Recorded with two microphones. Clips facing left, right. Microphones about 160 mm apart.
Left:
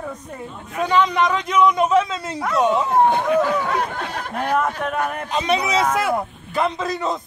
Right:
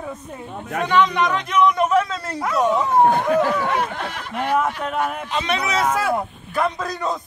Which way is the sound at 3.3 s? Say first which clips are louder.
Even; 40° right (ahead or behind).